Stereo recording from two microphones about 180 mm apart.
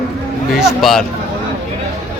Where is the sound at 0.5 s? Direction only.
Centre (ahead or behind).